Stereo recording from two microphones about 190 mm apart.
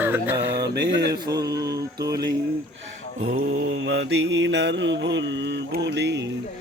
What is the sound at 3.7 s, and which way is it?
Mantra, 75° right (ahead or behind).